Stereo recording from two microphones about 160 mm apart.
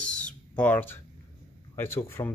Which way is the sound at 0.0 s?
5° left (ahead or behind).